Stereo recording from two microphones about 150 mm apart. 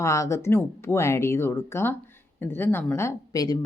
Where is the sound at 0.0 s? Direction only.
20° left (ahead or behind).